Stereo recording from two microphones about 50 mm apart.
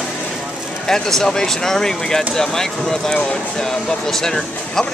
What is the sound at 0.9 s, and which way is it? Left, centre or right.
Speech, centre.